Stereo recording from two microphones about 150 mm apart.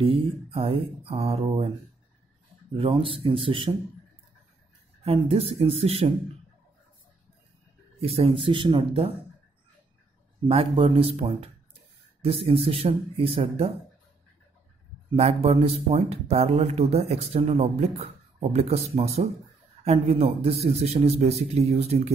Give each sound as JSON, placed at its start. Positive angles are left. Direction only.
{"t": 0.0, "sound": "speech", "side_deg": -35}
{"t": 2.7, "sound": "speech", "side_deg": -35}
{"t": 5.0, "sound": "speech", "side_deg": -40}
{"t": 8.0, "sound": "speech", "side_deg": -40}
{"t": 10.5, "sound": "speech", "side_deg": -40}
{"t": 15.1, "sound": "speech", "side_deg": -45}